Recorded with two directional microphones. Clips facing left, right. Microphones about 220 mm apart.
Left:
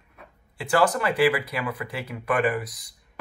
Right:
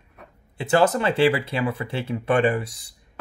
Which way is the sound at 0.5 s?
25° right (ahead or behind).